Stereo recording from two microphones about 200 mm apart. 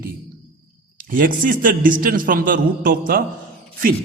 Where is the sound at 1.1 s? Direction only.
45° right (ahead or behind).